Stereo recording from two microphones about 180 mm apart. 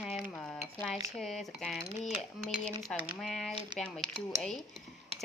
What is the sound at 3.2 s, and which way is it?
Speech, centre (ahead or behind).